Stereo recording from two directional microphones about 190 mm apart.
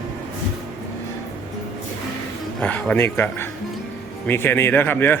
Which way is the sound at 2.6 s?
5° left (ahead or behind).